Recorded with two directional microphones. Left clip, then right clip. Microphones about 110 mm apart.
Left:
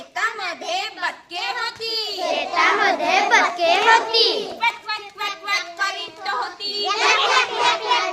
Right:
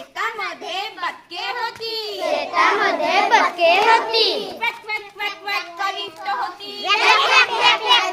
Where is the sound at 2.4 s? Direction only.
60° right (ahead or behind).